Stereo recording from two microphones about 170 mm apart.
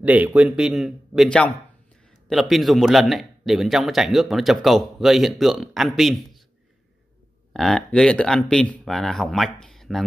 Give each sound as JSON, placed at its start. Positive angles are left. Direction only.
{"t": 0.0, "sound": "speech", "side_deg": -10}
{"t": 7.5, "sound": "speech", "side_deg": 5}